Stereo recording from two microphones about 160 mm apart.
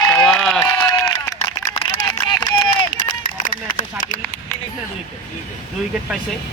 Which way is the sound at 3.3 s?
55° left (ahead or behind).